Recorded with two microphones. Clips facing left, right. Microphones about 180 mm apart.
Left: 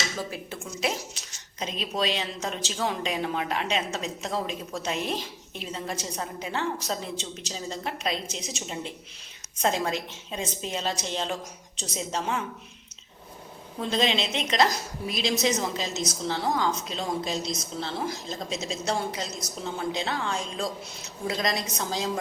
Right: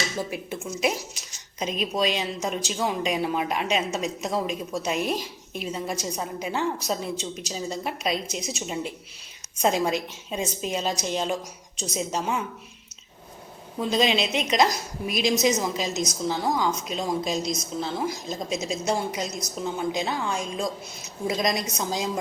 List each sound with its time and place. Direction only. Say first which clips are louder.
0.2 s a woman's voice: right 4 dB; 15° right (ahead or behind)
13.9 s a woman's voice: right 3 dB; 10° right (ahead or behind)